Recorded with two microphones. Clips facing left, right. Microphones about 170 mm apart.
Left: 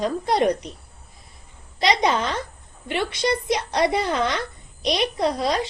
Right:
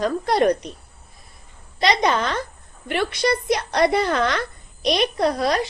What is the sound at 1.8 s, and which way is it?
A woman's voice, 20° left (ahead or behind).